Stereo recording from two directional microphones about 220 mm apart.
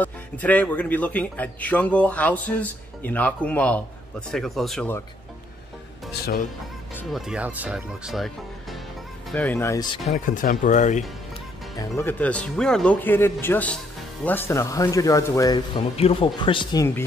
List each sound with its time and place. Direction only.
0.0 s a man's voice: 5° left (ahead or behind)
7.0 s speech: centre (ahead or behind)
9.3 s a man's voice: 5° left (ahead or behind)
10.1 s speech: 35° left (ahead or behind)
12.0 s a man's voice: 10° left (ahead or behind)